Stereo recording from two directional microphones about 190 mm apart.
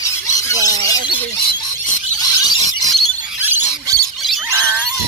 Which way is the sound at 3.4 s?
10° right (ahead or behind).